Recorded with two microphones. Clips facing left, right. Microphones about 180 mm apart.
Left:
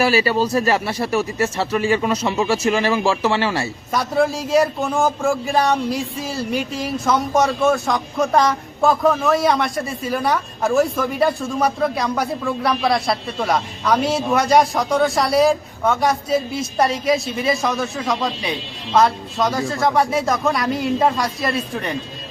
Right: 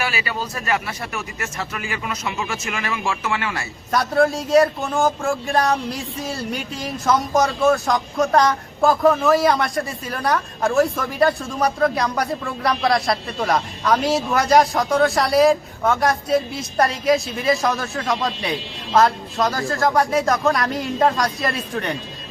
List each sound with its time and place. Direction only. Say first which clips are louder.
0.0 s speech: left 9 dB; 35° left (ahead or behind)
3.9 s speech: right 1 dB; centre (ahead or behind)